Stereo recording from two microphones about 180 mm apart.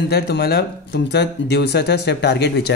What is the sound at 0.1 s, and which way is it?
Speech, 65° left (ahead or behind).